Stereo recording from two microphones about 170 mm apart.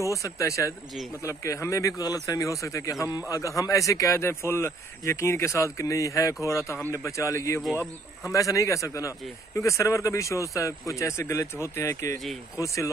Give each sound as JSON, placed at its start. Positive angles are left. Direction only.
{"t": 0.1, "sound": "speech", "side_deg": 20}